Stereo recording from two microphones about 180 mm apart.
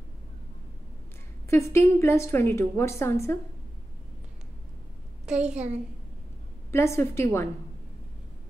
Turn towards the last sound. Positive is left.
turn(degrees=15)  # may be behind; listen again after turning